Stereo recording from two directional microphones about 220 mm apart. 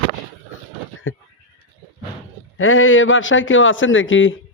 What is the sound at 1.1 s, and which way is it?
Speech, 65° left (ahead or behind).